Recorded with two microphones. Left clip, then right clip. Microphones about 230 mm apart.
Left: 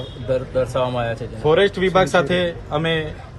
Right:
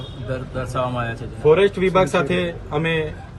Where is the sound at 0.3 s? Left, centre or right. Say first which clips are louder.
Left 8 dB; left.